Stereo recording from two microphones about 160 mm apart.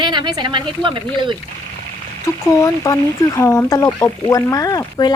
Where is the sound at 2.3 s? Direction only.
20° left (ahead or behind).